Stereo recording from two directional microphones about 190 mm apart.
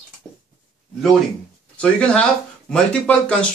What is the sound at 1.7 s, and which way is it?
Speech, 5° left (ahead or behind).